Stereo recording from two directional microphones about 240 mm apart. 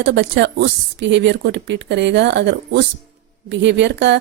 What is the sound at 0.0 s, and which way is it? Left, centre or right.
A woman's voice, right.